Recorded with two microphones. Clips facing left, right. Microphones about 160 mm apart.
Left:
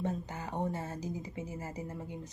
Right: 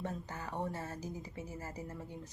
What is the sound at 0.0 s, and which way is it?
Speech, 20° left (ahead or behind).